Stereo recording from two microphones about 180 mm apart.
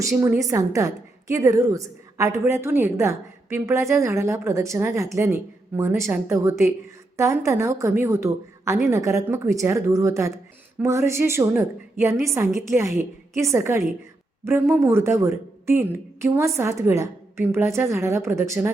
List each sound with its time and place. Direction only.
0.0 s a woman's voice: 15° right (ahead or behind)